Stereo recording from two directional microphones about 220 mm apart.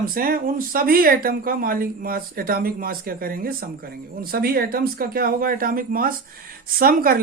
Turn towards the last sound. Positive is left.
turn(degrees=-40)  # may be behind; listen again after turning